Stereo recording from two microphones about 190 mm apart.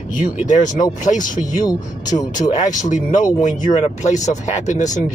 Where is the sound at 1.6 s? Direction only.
20° left (ahead or behind).